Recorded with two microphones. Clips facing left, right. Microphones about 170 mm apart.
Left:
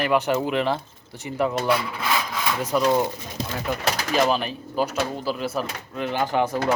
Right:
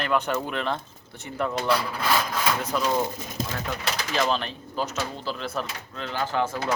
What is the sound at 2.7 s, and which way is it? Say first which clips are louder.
Speech: left 8 dB; 10° left (ahead or behind).